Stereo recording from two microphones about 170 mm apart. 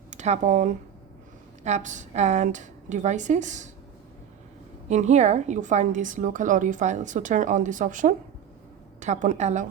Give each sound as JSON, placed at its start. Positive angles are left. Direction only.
{"t": 0.1, "sound": "a woman's voice", "side_deg": -45}
{"t": 4.9, "sound": "a woman's voice", "side_deg": -40}